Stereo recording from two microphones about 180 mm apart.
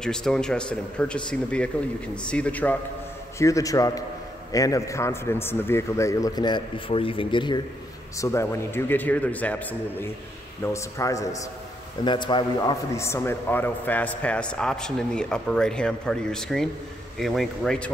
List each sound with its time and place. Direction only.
0.0 s a man's voice: 5° left (ahead or behind); by 7.6 s 25° left (ahead or behind)
8.2 s a man's voice: 15° left (ahead or behind)